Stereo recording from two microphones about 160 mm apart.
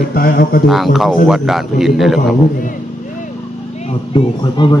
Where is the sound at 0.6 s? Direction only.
Centre (ahead or behind).